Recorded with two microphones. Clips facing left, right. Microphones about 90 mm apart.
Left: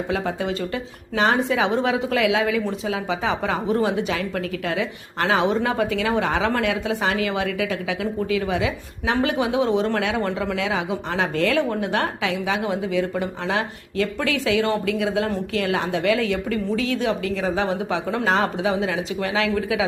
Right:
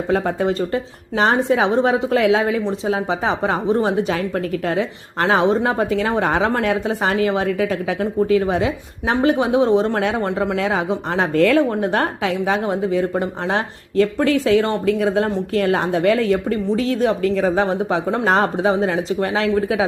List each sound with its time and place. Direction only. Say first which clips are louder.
0.1 s speech: right 8 dB; 40° right (ahead or behind)